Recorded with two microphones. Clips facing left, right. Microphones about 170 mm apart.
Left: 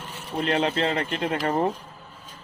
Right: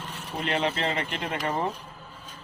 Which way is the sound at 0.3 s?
30° left (ahead or behind).